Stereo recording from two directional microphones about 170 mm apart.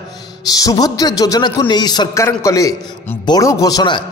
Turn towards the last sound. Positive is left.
turn(degrees=25)  # may be behind; listen again after turning